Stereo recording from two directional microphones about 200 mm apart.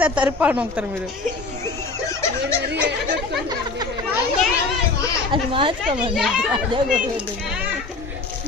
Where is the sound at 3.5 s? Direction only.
20° right (ahead or behind).